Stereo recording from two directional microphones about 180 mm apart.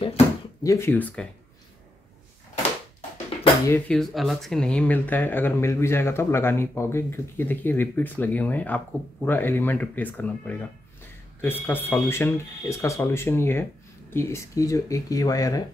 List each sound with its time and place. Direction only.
0.7 s speech: 15° left (ahead or behind)
3.6 s speech: 15° left (ahead or behind)
3.9 s speech: centre (ahead or behind); by 15.6 s 20° left (ahead or behind)